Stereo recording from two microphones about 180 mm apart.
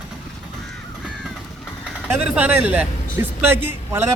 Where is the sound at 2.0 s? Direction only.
5° right (ahead or behind).